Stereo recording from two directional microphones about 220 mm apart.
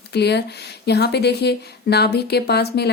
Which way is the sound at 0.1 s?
50° left (ahead or behind).